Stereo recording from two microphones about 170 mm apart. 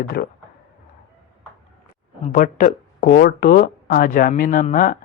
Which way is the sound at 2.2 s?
50° left (ahead or behind).